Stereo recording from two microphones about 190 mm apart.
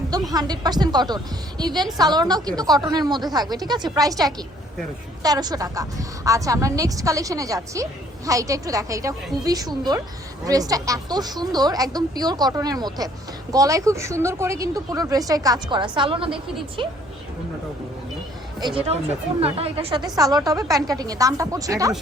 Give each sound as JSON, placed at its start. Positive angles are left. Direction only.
{"t": 0.1, "sound": "a woman's voice", "side_deg": -20}
{"t": 19.4, "sound": "speech", "side_deg": -30}
{"t": 20.1, "sound": "a woman's voice", "side_deg": -20}